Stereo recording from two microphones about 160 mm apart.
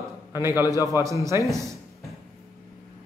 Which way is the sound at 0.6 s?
20° left (ahead or behind).